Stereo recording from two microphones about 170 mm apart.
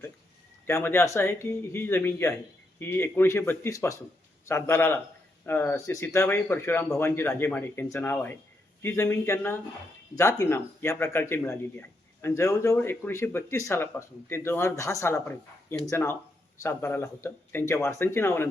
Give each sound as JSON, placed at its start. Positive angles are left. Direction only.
{"t": 0.7, "sound": "a man's voice", "side_deg": 15}